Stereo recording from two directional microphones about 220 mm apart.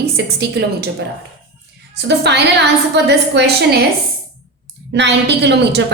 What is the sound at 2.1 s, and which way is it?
A woman's voice, 50° right (ahead or behind).